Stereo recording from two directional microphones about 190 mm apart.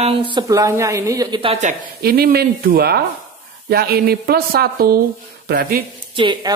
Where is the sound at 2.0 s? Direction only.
55° right (ahead or behind).